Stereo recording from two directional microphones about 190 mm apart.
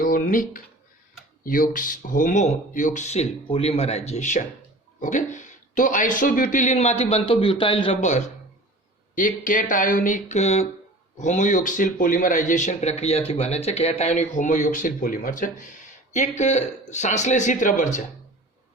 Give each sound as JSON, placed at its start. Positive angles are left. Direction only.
{"t": 0.0, "sound": "a sound", "side_deg": 45}
{"t": 1.5, "sound": "speech", "side_deg": 45}
{"t": 9.1, "sound": "speech", "side_deg": 45}